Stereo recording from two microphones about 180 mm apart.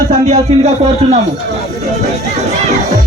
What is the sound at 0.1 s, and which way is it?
Speech, 40° right (ahead or behind).